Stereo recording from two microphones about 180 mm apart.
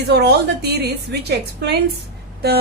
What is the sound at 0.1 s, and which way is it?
A woman's voice, 65° right (ahead or behind).